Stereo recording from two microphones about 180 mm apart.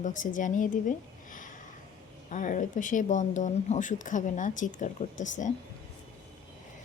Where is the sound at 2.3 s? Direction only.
45° left (ahead or behind).